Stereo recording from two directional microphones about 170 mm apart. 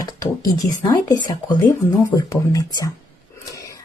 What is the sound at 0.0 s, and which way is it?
Speech, 20° left (ahead or behind).